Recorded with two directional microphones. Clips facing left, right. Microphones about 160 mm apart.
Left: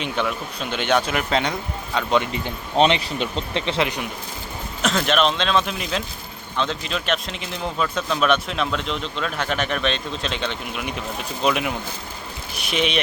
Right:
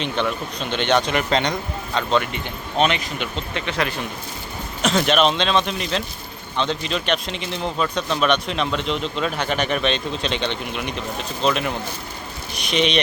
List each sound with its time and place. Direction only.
0.0 s speech: 5° left (ahead or behind)
2.2 s speech: 30° left (ahead or behind)
4.8 s speech: centre (ahead or behind)